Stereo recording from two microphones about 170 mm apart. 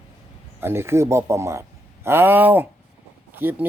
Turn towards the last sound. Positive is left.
turn(degrees=-10)  # may be behind; listen again after turning